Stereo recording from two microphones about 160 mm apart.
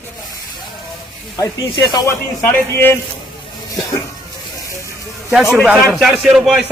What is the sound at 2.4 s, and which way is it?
Speech, 10° left (ahead or behind).